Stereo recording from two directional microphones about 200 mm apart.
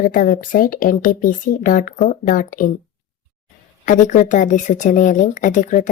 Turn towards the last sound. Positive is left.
turn(degrees=40)  # may be behind; listen again after turning